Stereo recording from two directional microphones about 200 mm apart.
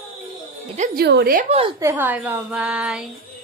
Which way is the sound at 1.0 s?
50° right (ahead or behind).